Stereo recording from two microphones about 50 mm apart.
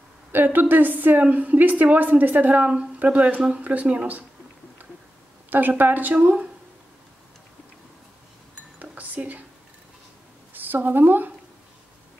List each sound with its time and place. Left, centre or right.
0.3 s a woman's voice: right
5.5 s a woman's voice: right
8.7 s a sound: right
10.5 s speech: right